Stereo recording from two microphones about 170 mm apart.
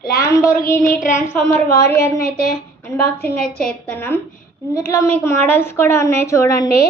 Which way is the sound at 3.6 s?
10° left (ahead or behind).